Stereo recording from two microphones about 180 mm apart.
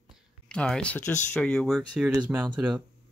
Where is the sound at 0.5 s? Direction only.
5° left (ahead or behind).